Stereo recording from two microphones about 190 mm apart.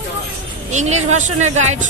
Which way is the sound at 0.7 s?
35° right (ahead or behind).